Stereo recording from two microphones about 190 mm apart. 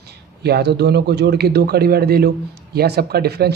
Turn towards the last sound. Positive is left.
turn(degrees=-55)  # may be behind; listen again after turning